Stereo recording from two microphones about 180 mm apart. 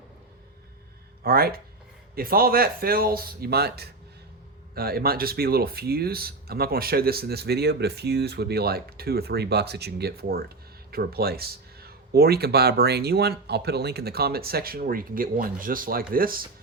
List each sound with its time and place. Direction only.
1.2 s speech: 55° right (ahead or behind)